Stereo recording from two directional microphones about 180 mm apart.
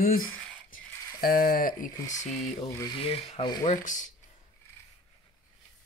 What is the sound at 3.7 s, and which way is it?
Speech, 45° left (ahead or behind).